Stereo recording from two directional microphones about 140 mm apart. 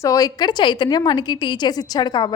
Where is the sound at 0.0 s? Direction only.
25° left (ahead or behind).